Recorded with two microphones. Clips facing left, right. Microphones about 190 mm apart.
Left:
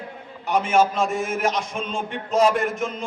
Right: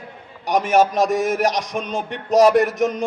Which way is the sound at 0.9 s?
40° right (ahead or behind).